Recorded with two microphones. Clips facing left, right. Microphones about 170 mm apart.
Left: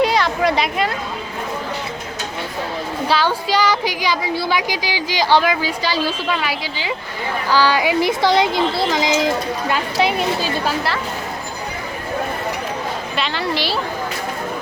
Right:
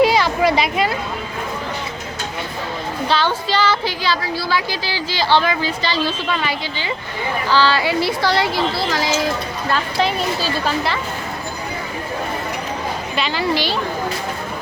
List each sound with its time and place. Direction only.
0.0 s a sound: 5° right (ahead or behind)
3.1 s speech: 10° left (ahead or behind)
13.1 s a woman's voice: centre (ahead or behind)